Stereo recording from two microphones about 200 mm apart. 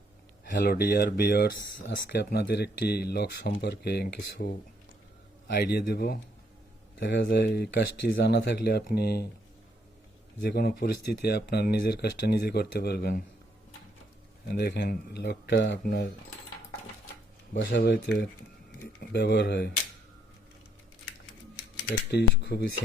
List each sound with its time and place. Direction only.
0.6 s speech: 50° left (ahead or behind)
10.5 s speech: 50° left (ahead or behind)
14.4 s speech: 55° left (ahead or behind)
17.5 s speech: 50° left (ahead or behind)
22.1 s speech: 55° left (ahead or behind)